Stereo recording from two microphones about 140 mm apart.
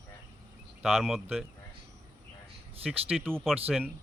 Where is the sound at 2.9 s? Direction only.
Centre (ahead or behind).